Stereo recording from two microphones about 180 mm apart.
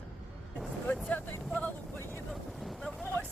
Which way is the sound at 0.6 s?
5° left (ahead or behind).